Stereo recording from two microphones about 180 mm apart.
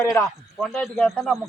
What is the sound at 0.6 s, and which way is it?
Speech, centre (ahead or behind).